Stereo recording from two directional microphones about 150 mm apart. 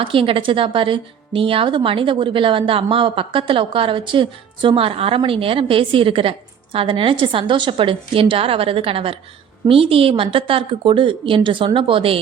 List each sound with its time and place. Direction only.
0.0 s a woman's voice: 35° right (ahead or behind)